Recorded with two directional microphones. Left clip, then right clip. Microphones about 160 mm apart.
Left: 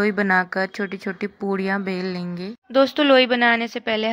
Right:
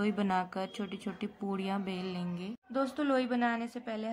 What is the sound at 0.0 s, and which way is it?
Speech, 25° left (ahead or behind).